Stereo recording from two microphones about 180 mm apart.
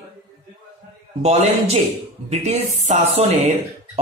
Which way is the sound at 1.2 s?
35° right (ahead or behind).